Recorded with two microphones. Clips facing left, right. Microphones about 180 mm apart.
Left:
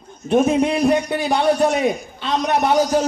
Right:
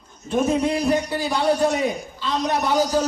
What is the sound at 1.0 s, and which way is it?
A man's voice, 65° left (ahead or behind).